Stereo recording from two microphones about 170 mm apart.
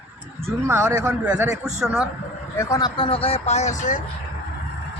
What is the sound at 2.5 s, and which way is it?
Speech, 20° left (ahead or behind).